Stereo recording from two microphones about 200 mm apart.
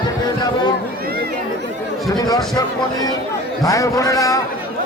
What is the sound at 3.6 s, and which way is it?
Speech, 15° left (ahead or behind).